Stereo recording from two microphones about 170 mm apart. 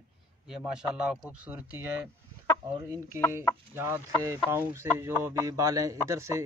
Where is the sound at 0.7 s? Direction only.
5° right (ahead or behind).